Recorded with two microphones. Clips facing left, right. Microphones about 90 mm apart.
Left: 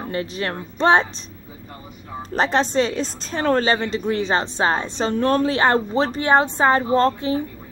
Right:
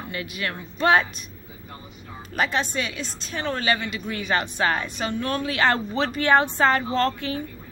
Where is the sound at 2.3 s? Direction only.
35° left (ahead or behind).